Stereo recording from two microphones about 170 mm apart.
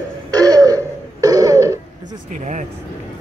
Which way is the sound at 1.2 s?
20° right (ahead or behind).